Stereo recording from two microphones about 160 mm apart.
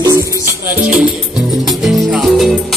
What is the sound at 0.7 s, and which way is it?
Music, 5° right (ahead or behind).